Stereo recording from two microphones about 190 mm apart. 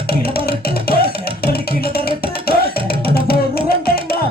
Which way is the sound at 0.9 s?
55° left (ahead or behind).